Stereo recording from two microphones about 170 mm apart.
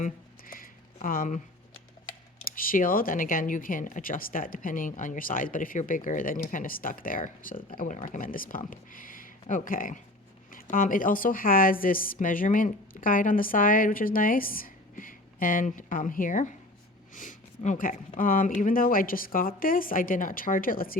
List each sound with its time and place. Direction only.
0.0 s a sound: 55° left (ahead or behind)
1.0 s speech: 55° left (ahead or behind)
2.6 s a woman's voice: 55° left (ahead or behind)